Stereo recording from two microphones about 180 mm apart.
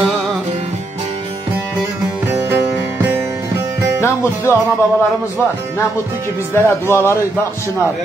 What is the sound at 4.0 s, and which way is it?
Speech, 15° left (ahead or behind).